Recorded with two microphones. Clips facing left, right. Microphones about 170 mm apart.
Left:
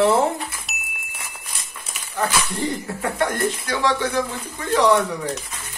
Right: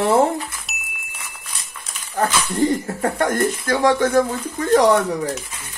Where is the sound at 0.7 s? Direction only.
Centre (ahead or behind).